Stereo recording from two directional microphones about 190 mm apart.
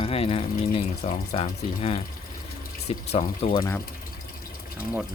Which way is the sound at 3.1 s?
30° left (ahead or behind).